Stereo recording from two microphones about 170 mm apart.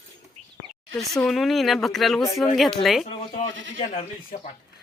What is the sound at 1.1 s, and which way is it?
Speech, centre (ahead or behind).